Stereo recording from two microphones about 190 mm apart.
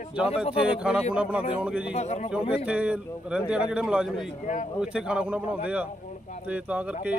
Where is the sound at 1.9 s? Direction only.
35° left (ahead or behind).